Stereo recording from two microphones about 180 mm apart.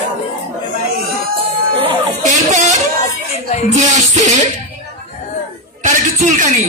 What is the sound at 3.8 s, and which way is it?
Music, 40° right (ahead or behind).